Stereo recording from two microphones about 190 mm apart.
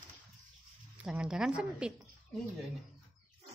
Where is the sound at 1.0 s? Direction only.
5° right (ahead or behind).